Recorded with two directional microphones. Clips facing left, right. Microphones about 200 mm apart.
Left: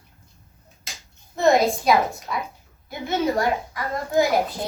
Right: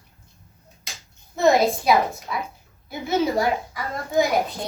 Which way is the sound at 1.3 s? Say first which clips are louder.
Even; centre (ahead or behind).